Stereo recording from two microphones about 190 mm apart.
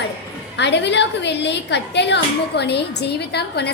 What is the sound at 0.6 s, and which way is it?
A woman's voice, 65° left (ahead or behind).